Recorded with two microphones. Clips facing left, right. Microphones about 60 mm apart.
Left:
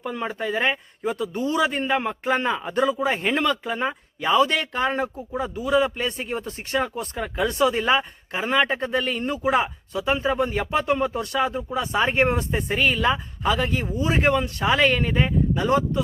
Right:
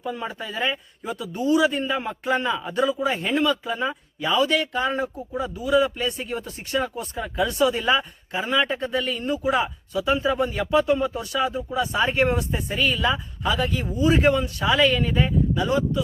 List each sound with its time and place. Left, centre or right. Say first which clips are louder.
0.0 s a man's voice: left 3 dB; left
2.2 s speech: left 1 dB; left
3.1 s speech: left 2 dB; left
3.3 s speech: right 1 dB; left